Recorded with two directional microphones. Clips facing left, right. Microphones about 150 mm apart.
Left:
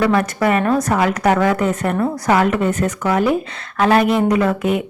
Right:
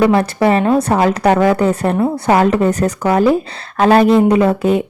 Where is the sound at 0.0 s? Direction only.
25° right (ahead or behind).